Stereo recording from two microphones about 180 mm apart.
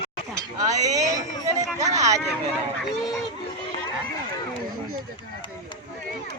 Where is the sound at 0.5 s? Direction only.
20° right (ahead or behind).